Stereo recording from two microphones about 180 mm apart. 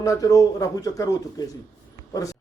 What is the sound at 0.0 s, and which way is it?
Speech, 20° left (ahead or behind).